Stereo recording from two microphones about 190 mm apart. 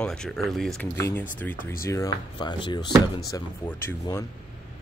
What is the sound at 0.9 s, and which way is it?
Speech, 15° left (ahead or behind).